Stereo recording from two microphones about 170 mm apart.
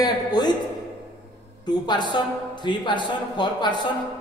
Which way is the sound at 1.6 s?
25° left (ahead or behind).